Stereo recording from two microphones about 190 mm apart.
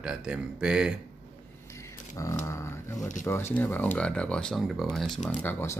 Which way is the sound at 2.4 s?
15° left (ahead or behind).